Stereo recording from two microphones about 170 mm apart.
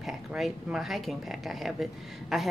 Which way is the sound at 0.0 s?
Centre (ahead or behind).